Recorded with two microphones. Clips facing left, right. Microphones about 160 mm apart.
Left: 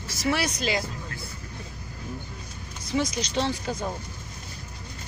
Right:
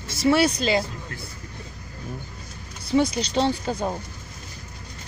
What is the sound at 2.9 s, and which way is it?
Speech, 30° right (ahead or behind).